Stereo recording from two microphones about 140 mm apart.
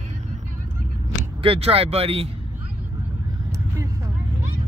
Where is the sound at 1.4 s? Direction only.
40° right (ahead or behind).